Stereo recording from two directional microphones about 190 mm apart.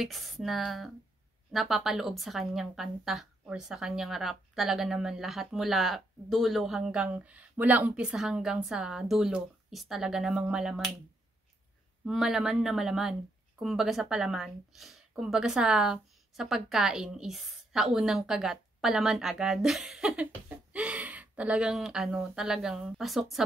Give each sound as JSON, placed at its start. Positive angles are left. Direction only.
{"t": 0.0, "sound": "a woman's voice", "side_deg": 0}
{"t": 12.0, "sound": "a woman's voice", "side_deg": 0}